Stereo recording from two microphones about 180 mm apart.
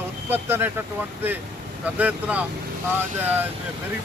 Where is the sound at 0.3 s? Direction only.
10° right (ahead or behind).